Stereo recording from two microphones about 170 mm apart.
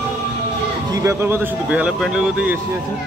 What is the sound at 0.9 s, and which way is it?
Speech, 15° right (ahead or behind).